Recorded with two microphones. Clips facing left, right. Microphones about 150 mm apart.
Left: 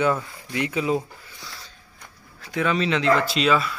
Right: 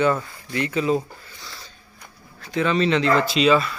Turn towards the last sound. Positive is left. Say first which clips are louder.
# right 3 dB
turn(degrees=0)  # may be behind; listen again after turning